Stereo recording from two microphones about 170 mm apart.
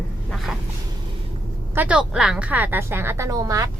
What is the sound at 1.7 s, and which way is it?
A woman's voice, 5° right (ahead or behind).